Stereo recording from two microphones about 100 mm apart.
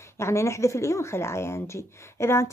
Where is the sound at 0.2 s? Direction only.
30° left (ahead or behind).